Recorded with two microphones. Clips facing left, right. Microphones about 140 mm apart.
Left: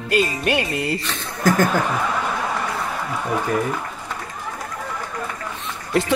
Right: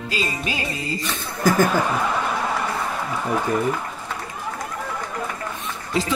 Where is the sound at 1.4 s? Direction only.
10° right (ahead or behind).